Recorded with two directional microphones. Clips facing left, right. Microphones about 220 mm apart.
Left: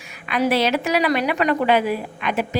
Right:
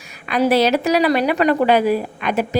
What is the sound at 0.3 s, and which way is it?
A woman's voice, 35° right (ahead or behind).